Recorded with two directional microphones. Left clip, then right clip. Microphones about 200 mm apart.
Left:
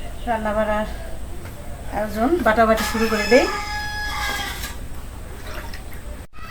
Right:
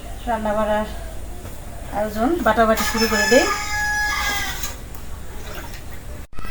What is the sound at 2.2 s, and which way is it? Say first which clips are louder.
Speech: left 1 dB; 15° left (ahead or behind).